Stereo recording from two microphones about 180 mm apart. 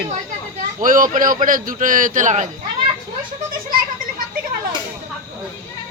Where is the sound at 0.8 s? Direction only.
50° right (ahead or behind).